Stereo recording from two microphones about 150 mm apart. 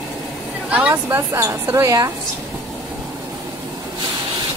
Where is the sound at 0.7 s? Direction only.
10° right (ahead or behind).